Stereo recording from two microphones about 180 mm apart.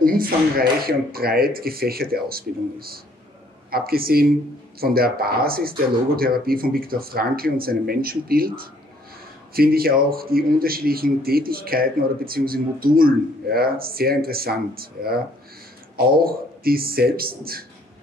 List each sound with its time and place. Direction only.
0.0 s a man's voice: 55° right (ahead or behind)